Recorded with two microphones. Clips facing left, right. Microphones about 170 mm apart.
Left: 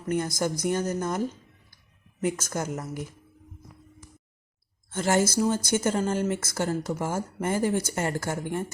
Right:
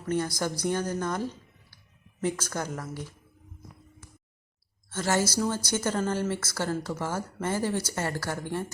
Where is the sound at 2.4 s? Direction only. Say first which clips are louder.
Left 2 dB; 15° left (ahead or behind).